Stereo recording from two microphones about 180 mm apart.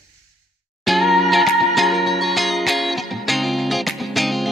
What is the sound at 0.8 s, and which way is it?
Music, centre (ahead or behind).